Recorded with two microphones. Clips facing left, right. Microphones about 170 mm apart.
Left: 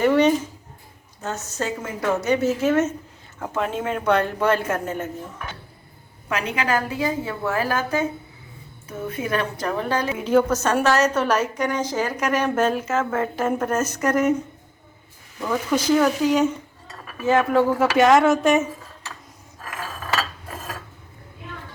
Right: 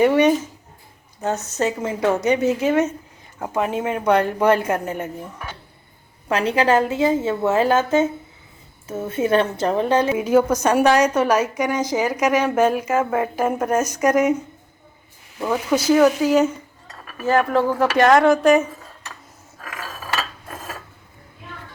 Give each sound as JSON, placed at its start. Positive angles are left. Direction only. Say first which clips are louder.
{"t": 0.0, "sound": "a woman's voice", "louder": "right 2 dB", "side_deg": -15}
{"t": 6.2, "sound": "a woman's voice", "louder": "right 6 dB", "side_deg": -30}
{"t": 10.2, "sound": "a woman's voice", "louder": "right 2 dB", "side_deg": -10}
{"t": 15.4, "sound": "a woman's voice", "louder": "right 2 dB", "side_deg": -10}